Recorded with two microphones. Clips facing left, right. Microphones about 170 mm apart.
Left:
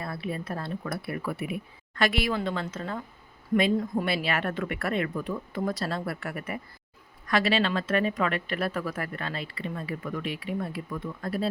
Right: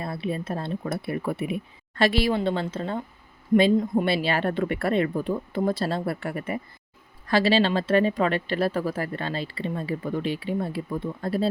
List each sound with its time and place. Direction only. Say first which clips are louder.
0.0 s speech: right 4 dB; 25° right (ahead or behind)